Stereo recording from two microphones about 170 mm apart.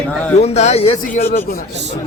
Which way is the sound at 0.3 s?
40° left (ahead or behind).